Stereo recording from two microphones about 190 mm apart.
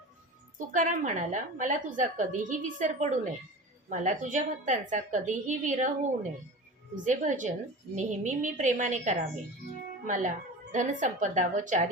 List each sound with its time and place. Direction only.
0.7 s a woman's voice: 40° right (ahead or behind)